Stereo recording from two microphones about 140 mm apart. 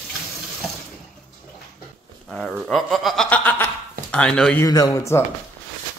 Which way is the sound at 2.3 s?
5° right (ahead or behind).